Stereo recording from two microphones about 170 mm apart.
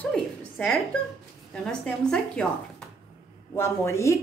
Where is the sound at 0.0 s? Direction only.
10° left (ahead or behind).